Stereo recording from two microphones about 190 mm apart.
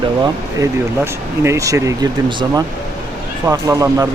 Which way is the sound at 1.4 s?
15° right (ahead or behind).